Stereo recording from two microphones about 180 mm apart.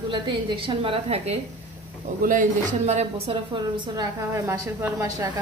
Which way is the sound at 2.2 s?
45° right (ahead or behind).